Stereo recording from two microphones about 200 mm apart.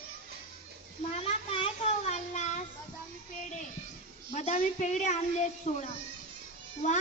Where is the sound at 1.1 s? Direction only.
30° left (ahead or behind).